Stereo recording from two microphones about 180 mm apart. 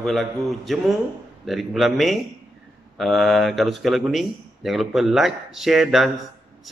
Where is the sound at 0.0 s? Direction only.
Centre (ahead or behind).